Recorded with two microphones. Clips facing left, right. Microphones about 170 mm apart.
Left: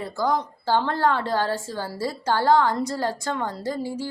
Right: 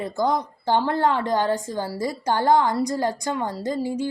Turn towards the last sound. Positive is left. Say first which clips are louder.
# right 3 dB
turn(degrees=-15)  # may be behind; listen again after turning